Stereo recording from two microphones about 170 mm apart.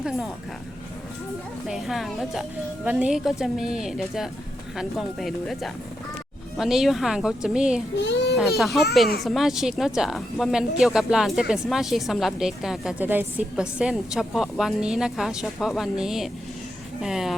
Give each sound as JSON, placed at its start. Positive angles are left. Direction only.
{"t": 1.6, "sound": "a woman's voice", "side_deg": 0}
{"t": 7.9, "sound": "a child's voice", "side_deg": 85}
{"t": 8.4, "sound": "a woman's voice", "side_deg": 0}